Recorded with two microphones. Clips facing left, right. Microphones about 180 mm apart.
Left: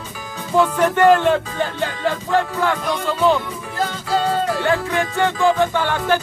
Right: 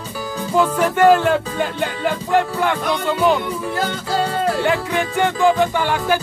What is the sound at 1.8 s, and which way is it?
Music, 15° right (ahead or behind).